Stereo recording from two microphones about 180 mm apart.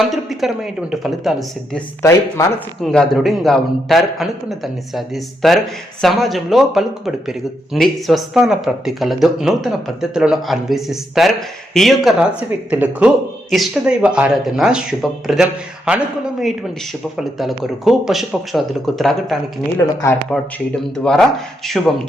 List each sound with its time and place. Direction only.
0.1 s a man's voice: centre (ahead or behind)
2.0 s speech: 15° left (ahead or behind)
2.8 s a man's voice: centre (ahead or behind)